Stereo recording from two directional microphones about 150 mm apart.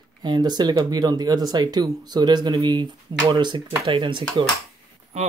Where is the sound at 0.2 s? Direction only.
30° right (ahead or behind).